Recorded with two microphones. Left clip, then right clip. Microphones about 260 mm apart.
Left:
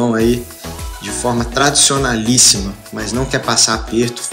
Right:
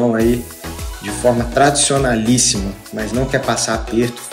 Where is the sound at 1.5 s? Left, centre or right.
Centre.